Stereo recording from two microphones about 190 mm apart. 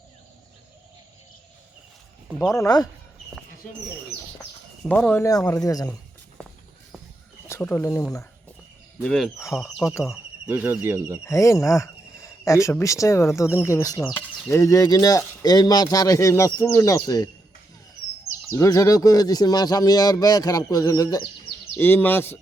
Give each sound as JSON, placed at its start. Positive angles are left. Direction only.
{"t": 2.4, "sound": "speech", "side_deg": 20}
{"t": 4.9, "sound": "speech", "side_deg": 10}
{"t": 7.4, "sound": "speech", "side_deg": 15}
{"t": 9.0, "sound": "speech", "side_deg": 5}
{"t": 11.3, "sound": "speech", "side_deg": 15}
{"t": 18.5, "sound": "speech", "side_deg": 15}